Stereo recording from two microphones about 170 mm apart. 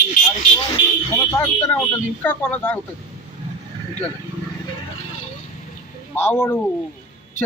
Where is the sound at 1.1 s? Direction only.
15° left (ahead or behind).